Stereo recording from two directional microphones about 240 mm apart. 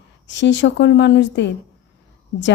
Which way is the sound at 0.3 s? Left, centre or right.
Left.